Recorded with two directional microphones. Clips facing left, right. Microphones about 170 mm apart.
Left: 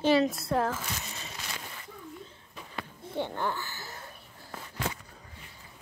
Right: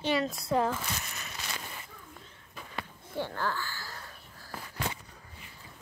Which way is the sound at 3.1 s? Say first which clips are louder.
Left 2 dB; 20° left (ahead or behind).